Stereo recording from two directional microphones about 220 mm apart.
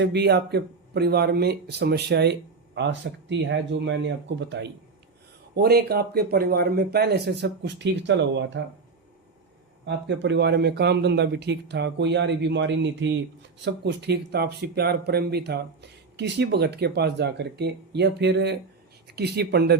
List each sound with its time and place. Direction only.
0.0 s speech: 50° right (ahead or behind)
9.8 s speech: 50° right (ahead or behind)